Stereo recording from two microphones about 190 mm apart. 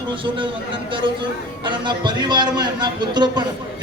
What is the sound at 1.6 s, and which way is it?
A man's voice, 25° right (ahead or behind).